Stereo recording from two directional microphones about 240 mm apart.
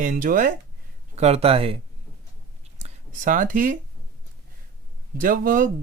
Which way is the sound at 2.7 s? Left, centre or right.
Right.